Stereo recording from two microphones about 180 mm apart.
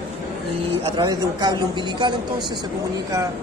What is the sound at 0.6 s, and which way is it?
A woman's voice, 30° right (ahead or behind).